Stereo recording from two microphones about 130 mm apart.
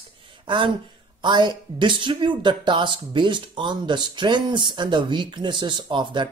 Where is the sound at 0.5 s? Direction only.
40° right (ahead or behind).